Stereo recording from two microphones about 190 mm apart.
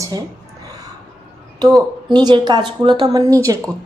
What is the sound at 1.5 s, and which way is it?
Speech, 20° right (ahead or behind).